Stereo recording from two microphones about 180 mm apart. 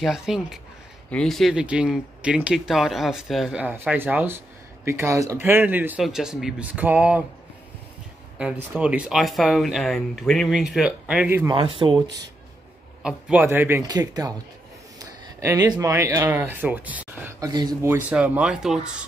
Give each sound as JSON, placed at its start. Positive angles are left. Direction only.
{"t": 0.0, "sound": "speech", "side_deg": -5}
{"t": 8.4, "sound": "speech", "side_deg": -5}
{"t": 11.5, "sound": "speech", "side_deg": -30}
{"t": 13.0, "sound": "speech", "side_deg": -10}
{"t": 17.4, "sound": "speech", "side_deg": -20}
{"t": 18.1, "sound": "speech", "side_deg": -5}